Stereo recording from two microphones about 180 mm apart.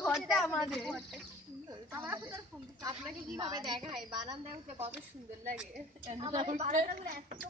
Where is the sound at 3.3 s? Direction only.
20° right (ahead or behind).